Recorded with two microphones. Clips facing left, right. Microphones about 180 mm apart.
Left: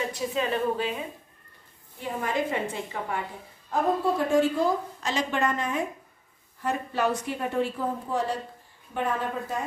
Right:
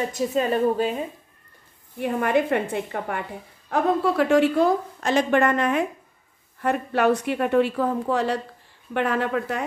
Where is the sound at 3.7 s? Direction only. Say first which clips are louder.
Right 3 dB; 75° right (ahead or behind).